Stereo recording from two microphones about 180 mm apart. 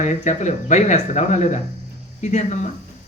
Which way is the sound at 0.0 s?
40° left (ahead or behind).